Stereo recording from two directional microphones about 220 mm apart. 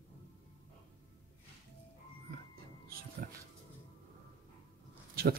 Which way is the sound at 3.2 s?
45° right (ahead or behind).